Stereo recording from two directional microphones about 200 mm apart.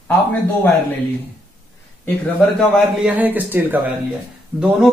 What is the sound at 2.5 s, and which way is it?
A man's voice, centre (ahead or behind).